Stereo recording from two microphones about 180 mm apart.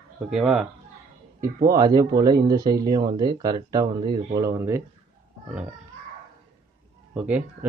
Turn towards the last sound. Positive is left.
turn(degrees=-10)  # may be behind; listen again after turning